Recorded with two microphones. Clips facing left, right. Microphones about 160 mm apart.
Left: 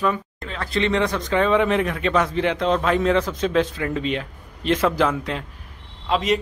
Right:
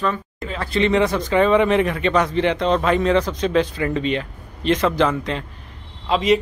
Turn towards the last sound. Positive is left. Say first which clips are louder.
# right 3 dB
turn(degrees=0)  # may be behind; listen again after turning